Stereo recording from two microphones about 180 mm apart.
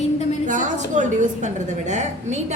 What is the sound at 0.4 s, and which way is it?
A woman's voice, 45° right (ahead or behind).